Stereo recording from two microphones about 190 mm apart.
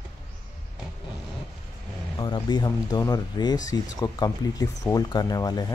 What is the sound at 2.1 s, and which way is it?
Speech, 25° left (ahead or behind).